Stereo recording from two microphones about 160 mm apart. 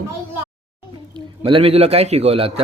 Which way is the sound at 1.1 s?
35° right (ahead or behind).